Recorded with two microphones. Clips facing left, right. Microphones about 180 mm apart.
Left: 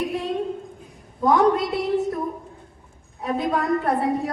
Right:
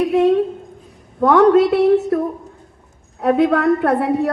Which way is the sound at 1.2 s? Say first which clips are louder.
Right 7 dB; 70° right (ahead or behind).